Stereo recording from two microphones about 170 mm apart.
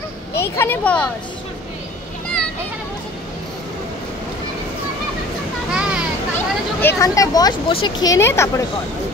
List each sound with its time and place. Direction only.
0.4 s speech: 10° left (ahead or behind)
5.7 s a sound: 5° right (ahead or behind)
6.3 s speech: 15° left (ahead or behind)